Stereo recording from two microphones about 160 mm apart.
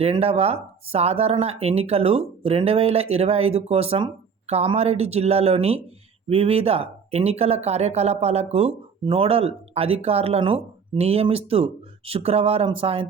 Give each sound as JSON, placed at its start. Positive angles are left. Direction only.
{"t": 0.0, "sound": "speech", "side_deg": -40}